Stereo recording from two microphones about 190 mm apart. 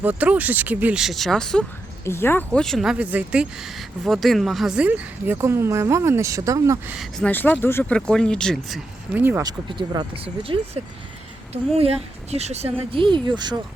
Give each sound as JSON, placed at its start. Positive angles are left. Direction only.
{"t": 0.0, "sound": "speech", "side_deg": -10}
{"t": 6.9, "sound": "speech", "side_deg": 0}
{"t": 7.3, "sound": "speech", "side_deg": 10}
{"t": 9.1, "sound": "speech", "side_deg": -10}
{"t": 9.4, "sound": "speech", "side_deg": -25}